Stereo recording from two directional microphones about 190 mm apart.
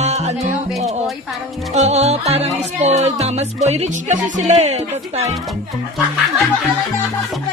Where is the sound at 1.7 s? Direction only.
35° right (ahead or behind).